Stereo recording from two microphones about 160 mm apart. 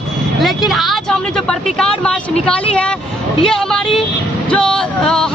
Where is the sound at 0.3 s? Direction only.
Centre (ahead or behind).